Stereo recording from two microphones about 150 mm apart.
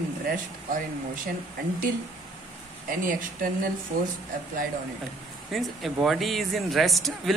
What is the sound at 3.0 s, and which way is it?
Speech, 65° right (ahead or behind).